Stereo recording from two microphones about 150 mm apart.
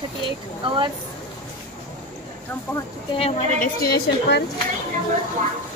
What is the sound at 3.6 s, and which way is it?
Speech, 90° left.